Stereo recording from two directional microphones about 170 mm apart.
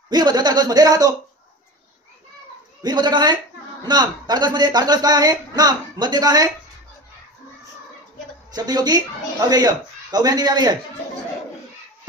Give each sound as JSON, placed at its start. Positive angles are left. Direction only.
{"t": 0.1, "sound": "speech", "side_deg": -25}
{"t": 2.8, "sound": "speech", "side_deg": -25}
{"t": 8.5, "sound": "speech", "side_deg": -25}